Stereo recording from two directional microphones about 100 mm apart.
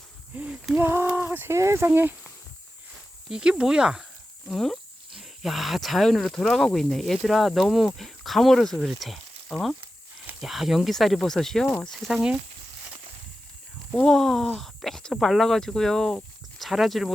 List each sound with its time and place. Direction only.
0.3 s a sound: 10° right (ahead or behind)
0.8 s speech: 25° right (ahead or behind)
3.2 s speech: 5° right (ahead or behind)
4.4 s speech: 5° left (ahead or behind)
13.9 s speech: 5° left (ahead or behind)